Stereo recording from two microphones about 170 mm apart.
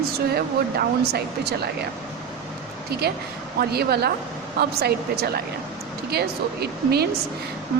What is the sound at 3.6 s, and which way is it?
Speech, 70° right (ahead or behind).